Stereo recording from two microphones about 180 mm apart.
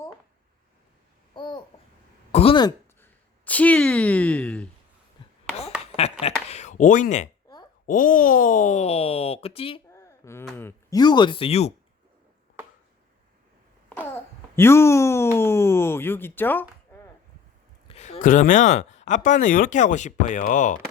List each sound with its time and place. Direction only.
1.4 s babbling: 25° left (ahead or behind)
2.3 s speech: 30° left (ahead or behind)
3.0 s speech: 10° left (ahead or behind)
5.8 s a sound: 35° left (ahead or behind)
7.9 s speech: 50° left (ahead or behind); by 9.8 s 30° left (ahead or behind)
9.9 s a sound: 15° left (ahead or behind)
10.6 s speech: 15° left (ahead or behind); by 11.7 s 35° left (ahead or behind)
14.0 s a child's voice: 10° left (ahead or behind)
17.8 s speech: 35° left (ahead or behind)